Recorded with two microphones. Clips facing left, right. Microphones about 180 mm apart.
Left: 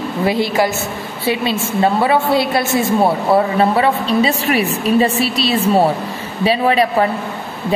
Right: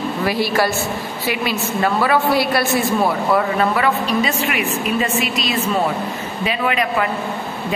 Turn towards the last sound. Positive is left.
turn(degrees=35)  # may be behind; listen again after turning